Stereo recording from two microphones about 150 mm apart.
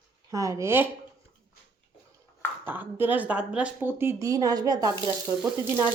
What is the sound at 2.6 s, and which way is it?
A woman's voice, 15° right (ahead or behind).